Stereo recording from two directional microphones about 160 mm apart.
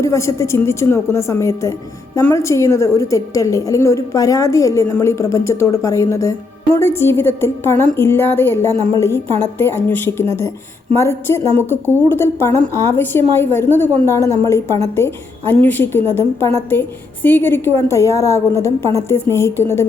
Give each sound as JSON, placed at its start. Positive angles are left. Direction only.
{"t": 0.0, "sound": "a woman's voice", "side_deg": 20}